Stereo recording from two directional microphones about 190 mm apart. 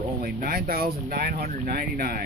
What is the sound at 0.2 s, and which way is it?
Speech, 50° right (ahead or behind).